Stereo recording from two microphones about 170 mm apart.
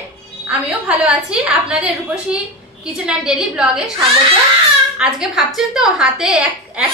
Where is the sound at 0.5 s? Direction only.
5° right (ahead or behind).